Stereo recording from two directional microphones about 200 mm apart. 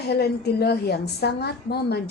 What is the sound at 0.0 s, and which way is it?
A woman's voice, 55° left (ahead or behind).